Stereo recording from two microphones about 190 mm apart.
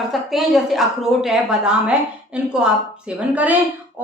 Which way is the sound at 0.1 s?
Centre (ahead or behind).